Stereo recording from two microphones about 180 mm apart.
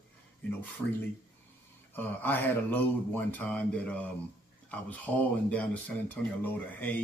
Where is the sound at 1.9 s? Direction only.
10° left (ahead or behind).